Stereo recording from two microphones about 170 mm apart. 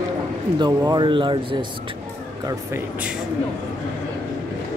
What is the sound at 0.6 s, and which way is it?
Speech, 25° right (ahead or behind).